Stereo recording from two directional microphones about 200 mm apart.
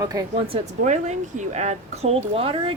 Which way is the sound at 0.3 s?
30° right (ahead or behind).